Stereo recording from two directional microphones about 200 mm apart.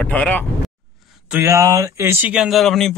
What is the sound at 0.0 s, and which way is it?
Speech, 10° left (ahead or behind).